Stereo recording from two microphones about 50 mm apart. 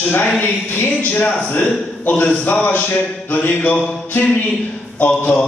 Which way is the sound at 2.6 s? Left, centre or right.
Left.